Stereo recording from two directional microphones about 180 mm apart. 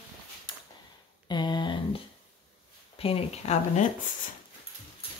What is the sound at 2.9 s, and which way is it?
Speech, 30° left (ahead or behind).